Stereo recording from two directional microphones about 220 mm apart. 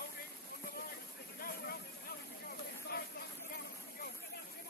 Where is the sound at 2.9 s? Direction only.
45° left (ahead or behind).